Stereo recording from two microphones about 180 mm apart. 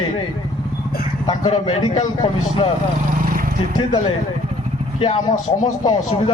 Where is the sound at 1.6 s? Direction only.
25° left (ahead or behind).